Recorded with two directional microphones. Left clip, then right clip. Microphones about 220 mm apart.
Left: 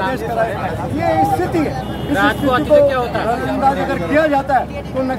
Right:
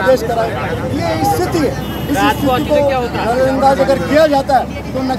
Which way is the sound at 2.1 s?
45° left (ahead or behind).